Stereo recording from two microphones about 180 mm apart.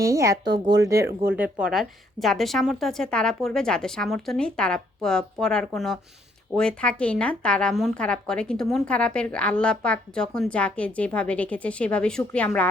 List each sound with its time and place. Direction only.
0.0 s a woman's voice: 15° right (ahead or behind); by 12.6 s 5° left (ahead or behind)